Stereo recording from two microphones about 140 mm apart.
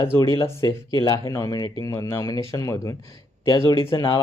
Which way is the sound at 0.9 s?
30° left (ahead or behind).